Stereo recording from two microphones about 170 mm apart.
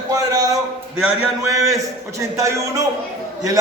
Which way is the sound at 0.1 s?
20° right (ahead or behind).